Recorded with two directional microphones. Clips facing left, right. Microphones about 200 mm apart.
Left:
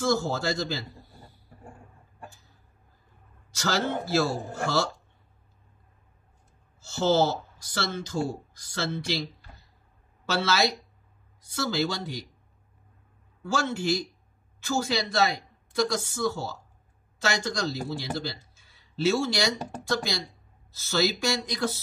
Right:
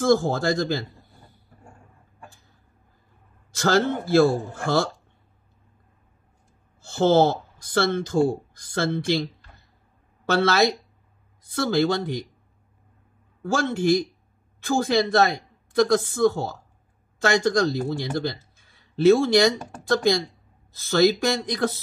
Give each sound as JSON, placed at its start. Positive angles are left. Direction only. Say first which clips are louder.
{"t": 0.0, "sound": "a woman's voice", "louder": "right 6 dB", "side_deg": -50}
{"t": 3.5, "sound": "a woman's voice", "louder": "right 7 dB", "side_deg": -55}
{"t": 6.8, "sound": "a woman's voice", "louder": "right 5 dB", "side_deg": -55}
{"t": 13.4, "sound": "a woman's voice", "louder": "right 5 dB", "side_deg": -50}